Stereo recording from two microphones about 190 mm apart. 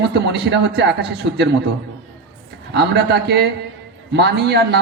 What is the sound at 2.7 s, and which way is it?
A man's voice, 60° right (ahead or behind).